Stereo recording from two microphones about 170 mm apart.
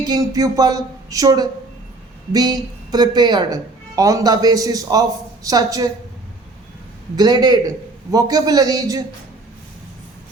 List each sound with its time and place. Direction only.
0.1 s speech: 20° right (ahead or behind)
7.2 s speech: 25° right (ahead or behind)